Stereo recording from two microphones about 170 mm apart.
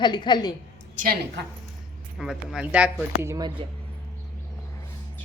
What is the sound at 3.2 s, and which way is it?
Speech, 20° right (ahead or behind).